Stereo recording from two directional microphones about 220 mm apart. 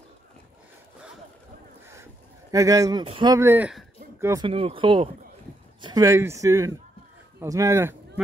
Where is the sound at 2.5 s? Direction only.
15° right (ahead or behind).